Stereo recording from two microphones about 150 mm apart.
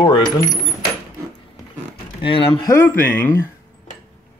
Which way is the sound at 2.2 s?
35° left (ahead or behind).